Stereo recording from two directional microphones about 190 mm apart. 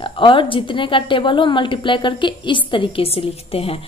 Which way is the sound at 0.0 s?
25° left (ahead or behind).